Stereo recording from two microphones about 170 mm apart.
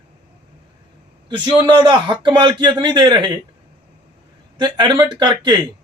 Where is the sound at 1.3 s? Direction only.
25° right (ahead or behind).